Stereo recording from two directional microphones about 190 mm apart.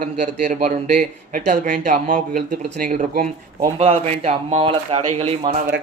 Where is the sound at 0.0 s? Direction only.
45° right (ahead or behind).